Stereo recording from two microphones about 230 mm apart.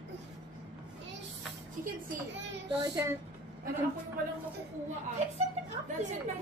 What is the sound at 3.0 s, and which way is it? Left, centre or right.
Speech, centre.